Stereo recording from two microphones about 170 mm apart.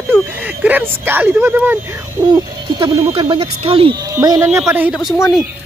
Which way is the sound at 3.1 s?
35° right (ahead or behind).